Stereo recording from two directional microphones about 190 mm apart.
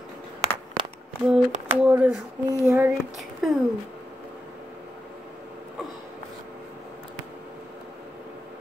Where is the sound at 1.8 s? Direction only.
10° right (ahead or behind).